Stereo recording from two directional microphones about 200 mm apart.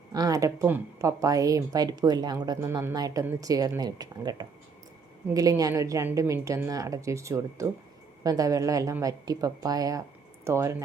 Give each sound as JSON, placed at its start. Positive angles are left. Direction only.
{"t": 0.1, "sound": "speech", "side_deg": -20}